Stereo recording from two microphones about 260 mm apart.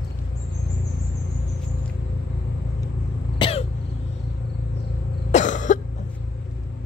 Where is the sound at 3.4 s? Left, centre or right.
Left.